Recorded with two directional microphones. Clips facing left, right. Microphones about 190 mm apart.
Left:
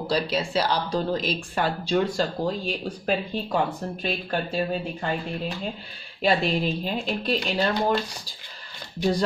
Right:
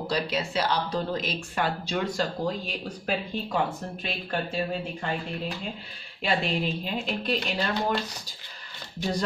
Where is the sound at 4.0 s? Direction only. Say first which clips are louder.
Left 3 dB; 35° left (ahead or behind).